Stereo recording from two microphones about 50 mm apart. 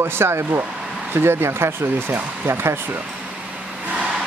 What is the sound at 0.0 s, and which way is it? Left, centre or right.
Speech, right.